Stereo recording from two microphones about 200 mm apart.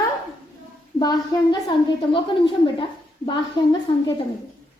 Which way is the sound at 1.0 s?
20° left (ahead or behind).